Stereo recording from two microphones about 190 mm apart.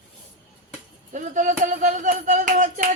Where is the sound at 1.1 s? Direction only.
40° right (ahead or behind).